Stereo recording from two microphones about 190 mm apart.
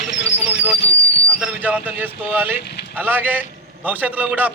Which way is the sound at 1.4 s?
10° right (ahead or behind).